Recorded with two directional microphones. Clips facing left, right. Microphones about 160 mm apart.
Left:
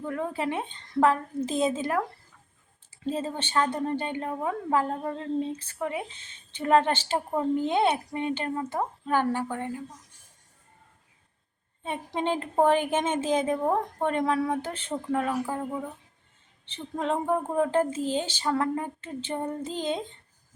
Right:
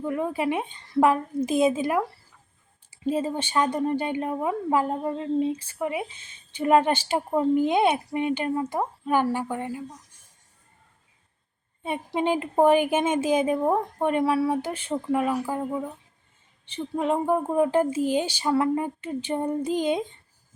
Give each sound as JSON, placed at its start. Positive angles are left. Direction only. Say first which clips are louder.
{"t": 0.0, "sound": "a woman's voice", "louder": "right 4 dB", "side_deg": -15}
{"t": 11.8, "sound": "a woman's voice", "louder": "right 4 dB", "side_deg": -10}
{"t": 16.6, "sound": "a woman's voice", "louder": "right 4 dB", "side_deg": -10}